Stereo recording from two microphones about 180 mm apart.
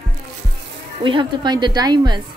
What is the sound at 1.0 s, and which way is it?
A woman's voice, 25° right (ahead or behind).